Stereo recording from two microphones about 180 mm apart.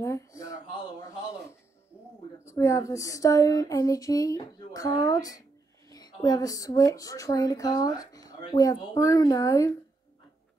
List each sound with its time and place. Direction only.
0.0 s speech: 15° left (ahead or behind)
2.4 s speech: 15° left (ahead or behind)